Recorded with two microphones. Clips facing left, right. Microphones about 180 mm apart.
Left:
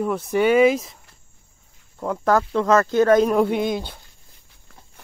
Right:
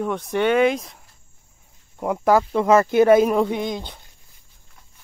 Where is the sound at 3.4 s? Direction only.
5° left (ahead or behind).